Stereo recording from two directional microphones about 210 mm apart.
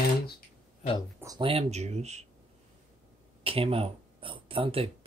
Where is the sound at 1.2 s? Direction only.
15° right (ahead or behind).